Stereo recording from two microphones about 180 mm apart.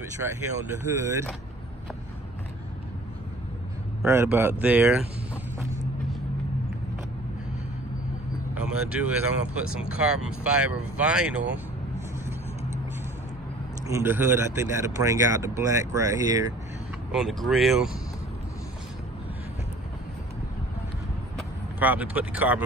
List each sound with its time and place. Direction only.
0.9 s speech: 15° right (ahead or behind)
4.0 s speech: 15° right (ahead or behind)
8.5 s speech: 5° right (ahead or behind)
13.8 s speech: 15° right (ahead or behind)
17.1 s speech: centre (ahead or behind)
21.7 s speech: 10° right (ahead or behind)